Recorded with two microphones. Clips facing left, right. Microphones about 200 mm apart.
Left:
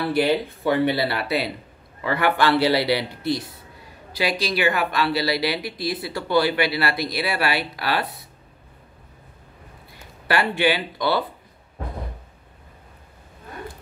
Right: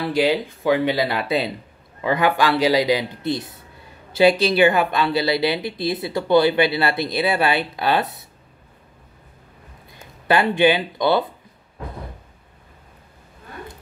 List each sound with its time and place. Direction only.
0.0 s a man's voice: 15° right (ahead or behind)
10.2 s speech: 20° right (ahead or behind)